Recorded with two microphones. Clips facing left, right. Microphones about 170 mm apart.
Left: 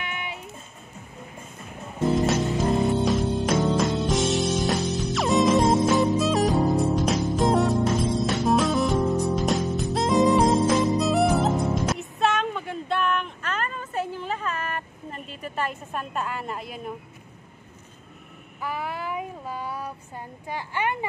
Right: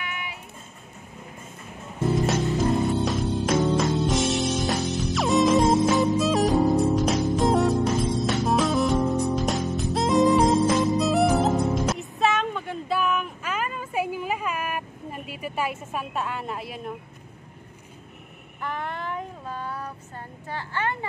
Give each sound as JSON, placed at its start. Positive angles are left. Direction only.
{"t": 0.0, "sound": "music", "side_deg": 25}
{"t": 2.2, "sound": "music", "side_deg": 0}
{"t": 18.6, "sound": "child singing", "side_deg": 5}
{"t": 20.4, "sound": "a sound", "side_deg": 15}